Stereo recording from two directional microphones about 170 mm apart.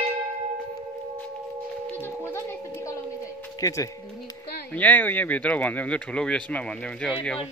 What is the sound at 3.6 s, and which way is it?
Speech, 20° left (ahead or behind).